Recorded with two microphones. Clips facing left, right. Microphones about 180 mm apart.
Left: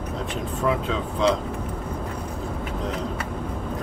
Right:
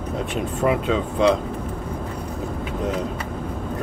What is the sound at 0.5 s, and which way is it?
Speech, 60° right (ahead or behind).